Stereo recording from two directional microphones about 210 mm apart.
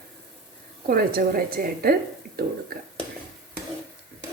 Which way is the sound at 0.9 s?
45° right (ahead or behind).